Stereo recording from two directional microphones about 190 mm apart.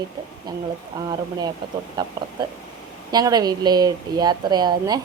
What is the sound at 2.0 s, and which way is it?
A woman's voice, 20° right (ahead or behind).